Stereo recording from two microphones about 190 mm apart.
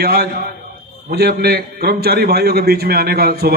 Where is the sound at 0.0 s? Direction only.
55° right (ahead or behind).